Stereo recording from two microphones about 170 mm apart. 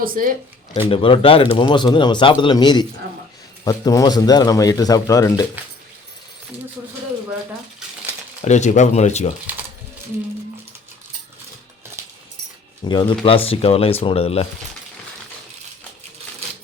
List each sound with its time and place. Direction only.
0.0 s speech: 55° right (ahead or behind)
0.8 s speech: 30° left (ahead or behind)
8.4 s speech: 45° left (ahead or behind)
12.8 s speech: 25° left (ahead or behind)